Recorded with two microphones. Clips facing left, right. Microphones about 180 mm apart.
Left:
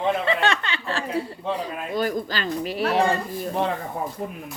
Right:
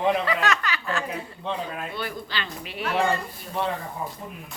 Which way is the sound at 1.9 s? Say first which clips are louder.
Left 7 dB; 40° left (ahead or behind).